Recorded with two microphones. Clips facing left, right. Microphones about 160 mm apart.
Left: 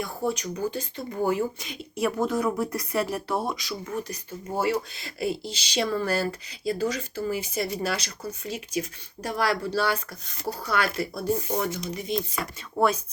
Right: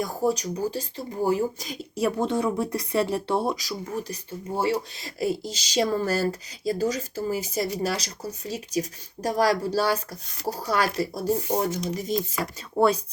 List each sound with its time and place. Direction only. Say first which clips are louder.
0.0 s speech: right 4 dB; 40° right (ahead or behind)
12.8 s speech: right 2 dB; 30° right (ahead or behind)